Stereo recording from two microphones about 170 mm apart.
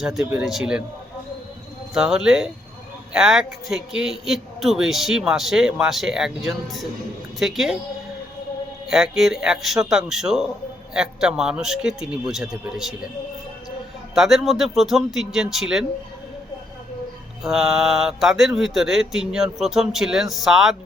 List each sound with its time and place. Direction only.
0.0 s a man's voice: centre (ahead or behind)
1.9 s a man's voice: 5° right (ahead or behind)
8.9 s a man's voice: centre (ahead or behind)
14.2 s a man's voice: centre (ahead or behind)
17.4 s a man's voice: centre (ahead or behind)